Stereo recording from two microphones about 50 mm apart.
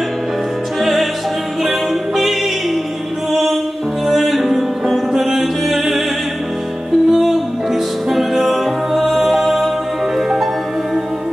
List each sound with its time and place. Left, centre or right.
0.7 s music: centre
4.1 s music: centre
7.1 s music: centre